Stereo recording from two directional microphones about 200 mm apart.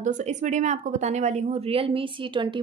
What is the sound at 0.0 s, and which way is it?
A woman's voice, 35° right (ahead or behind).